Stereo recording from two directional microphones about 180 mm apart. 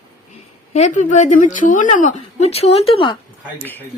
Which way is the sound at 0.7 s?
40° left (ahead or behind).